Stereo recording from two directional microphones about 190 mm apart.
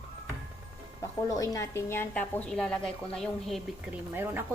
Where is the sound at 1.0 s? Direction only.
15° left (ahead or behind); by 4.0 s centre (ahead or behind).